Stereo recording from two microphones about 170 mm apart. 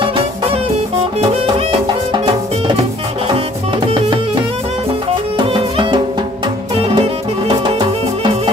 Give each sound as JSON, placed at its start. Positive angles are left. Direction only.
{"t": 0.0, "sound": "music", "side_deg": -30}
{"t": 5.5, "sound": "music", "side_deg": -30}